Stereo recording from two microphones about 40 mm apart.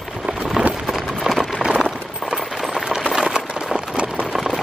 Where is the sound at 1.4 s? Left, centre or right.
Centre.